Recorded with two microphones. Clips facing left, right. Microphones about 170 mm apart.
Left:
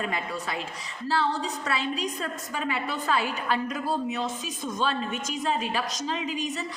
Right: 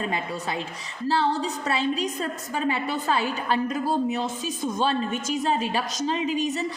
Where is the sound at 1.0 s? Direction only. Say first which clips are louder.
Right 3 dB; 25° right (ahead or behind).